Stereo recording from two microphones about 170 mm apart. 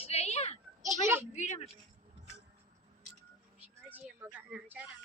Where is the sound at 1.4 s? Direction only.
45° left (ahead or behind).